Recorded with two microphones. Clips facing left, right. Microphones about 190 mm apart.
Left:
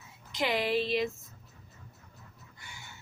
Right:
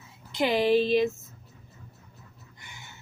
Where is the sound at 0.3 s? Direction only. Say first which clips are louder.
Right 7 dB; 25° right (ahead or behind).